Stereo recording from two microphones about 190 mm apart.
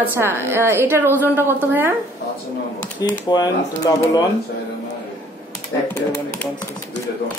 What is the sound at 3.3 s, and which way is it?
Speech, 20° left (ahead or behind).